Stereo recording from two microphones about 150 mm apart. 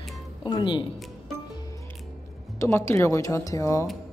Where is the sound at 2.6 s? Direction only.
20° left (ahead or behind).